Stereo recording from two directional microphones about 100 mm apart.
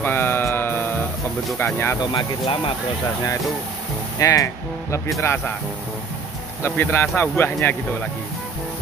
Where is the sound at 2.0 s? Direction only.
50° left (ahead or behind).